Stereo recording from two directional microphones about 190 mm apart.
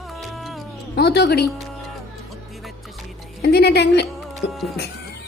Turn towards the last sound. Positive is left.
turn(degrees=65)  # may be behind; listen again after turning